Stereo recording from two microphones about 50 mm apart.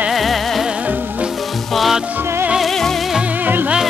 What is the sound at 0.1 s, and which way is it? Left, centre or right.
Music, centre.